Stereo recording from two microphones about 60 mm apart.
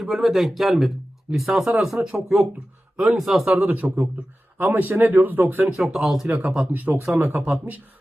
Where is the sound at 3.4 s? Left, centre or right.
Right.